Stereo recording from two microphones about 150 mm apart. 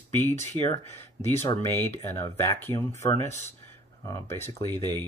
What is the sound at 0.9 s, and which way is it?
Speech, 15° left (ahead or behind).